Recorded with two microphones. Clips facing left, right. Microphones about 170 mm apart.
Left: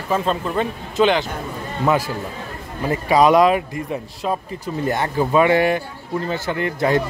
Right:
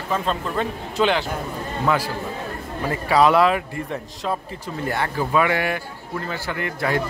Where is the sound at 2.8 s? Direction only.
15° left (ahead or behind).